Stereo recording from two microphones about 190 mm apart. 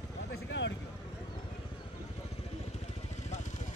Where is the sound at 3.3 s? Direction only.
40° left (ahead or behind).